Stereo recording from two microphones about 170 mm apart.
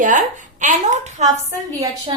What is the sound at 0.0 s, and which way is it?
Speech, 50° right (ahead or behind).